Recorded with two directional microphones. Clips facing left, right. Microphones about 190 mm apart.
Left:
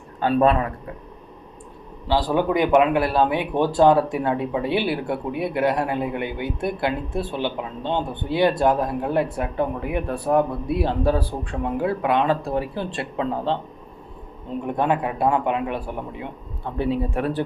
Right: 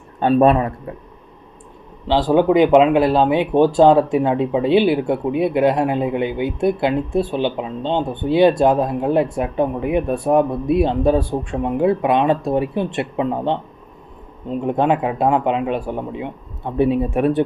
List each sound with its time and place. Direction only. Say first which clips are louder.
0.2 s speech: right 5 dB; 25° right (ahead or behind)
2.0 s speech: right 6 dB; 20° right (ahead or behind)
14.6 s speech: right 5 dB; 20° right (ahead or behind)